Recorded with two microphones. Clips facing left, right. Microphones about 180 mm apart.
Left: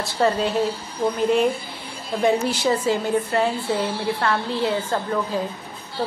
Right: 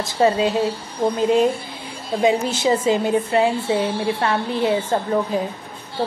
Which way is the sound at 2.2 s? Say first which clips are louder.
Right 2 dB; 20° right (ahead or behind).